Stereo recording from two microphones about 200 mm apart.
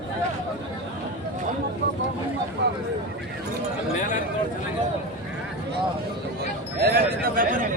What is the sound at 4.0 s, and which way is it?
Speech, 40° left (ahead or behind).